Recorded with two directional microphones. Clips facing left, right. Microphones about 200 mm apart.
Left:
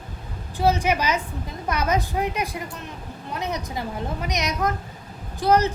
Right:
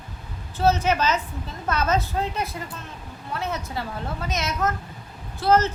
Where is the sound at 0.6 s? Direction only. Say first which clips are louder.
Even; 15° left (ahead or behind).